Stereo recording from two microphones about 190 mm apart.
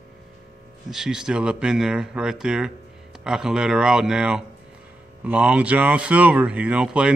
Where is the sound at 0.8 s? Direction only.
Centre (ahead or behind).